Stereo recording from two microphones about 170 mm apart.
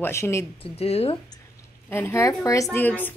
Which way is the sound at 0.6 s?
35° left (ahead or behind).